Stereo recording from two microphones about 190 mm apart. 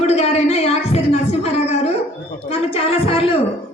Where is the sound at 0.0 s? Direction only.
35° left (ahead or behind).